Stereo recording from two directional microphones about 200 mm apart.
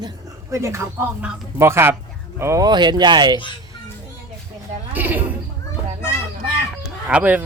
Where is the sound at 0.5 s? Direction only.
15° right (ahead or behind).